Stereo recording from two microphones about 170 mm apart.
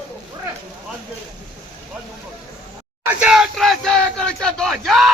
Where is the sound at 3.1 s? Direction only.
5° right (ahead or behind).